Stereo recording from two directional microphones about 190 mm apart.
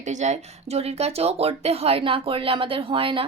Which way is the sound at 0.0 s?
40° right (ahead or behind).